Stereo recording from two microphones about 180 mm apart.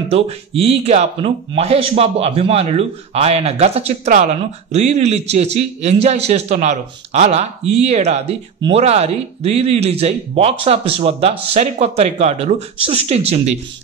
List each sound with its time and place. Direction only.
0.1 s speech: 35° right (ahead or behind)